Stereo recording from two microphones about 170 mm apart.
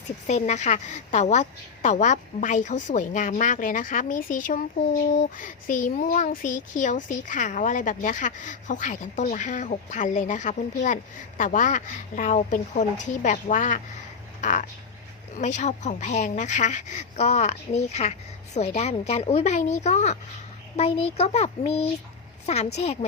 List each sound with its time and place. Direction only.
0.3 s a woman's voice: 45° left (ahead or behind)